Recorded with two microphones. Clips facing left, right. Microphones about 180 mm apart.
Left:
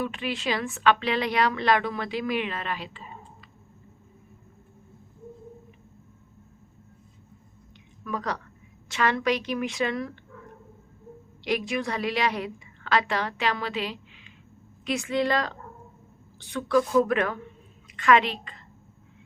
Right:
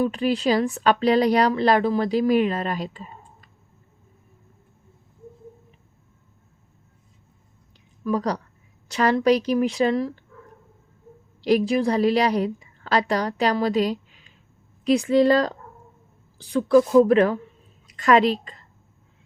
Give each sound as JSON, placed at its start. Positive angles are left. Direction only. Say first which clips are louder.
{"t": 0.0, "sound": "a woman's voice", "louder": "right 8 dB", "side_deg": -40}
{"t": 8.0, "sound": "a woman's voice", "louder": "right 7 dB", "side_deg": -35}
{"t": 11.4, "sound": "a woman's voice", "louder": "right 8 dB", "side_deg": -35}